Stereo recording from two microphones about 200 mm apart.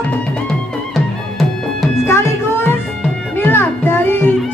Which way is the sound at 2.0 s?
10° left (ahead or behind).